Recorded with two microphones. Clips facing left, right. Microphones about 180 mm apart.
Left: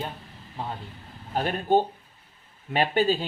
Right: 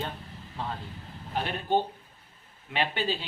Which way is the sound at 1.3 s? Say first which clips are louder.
Left 5 dB; 45° left (ahead or behind).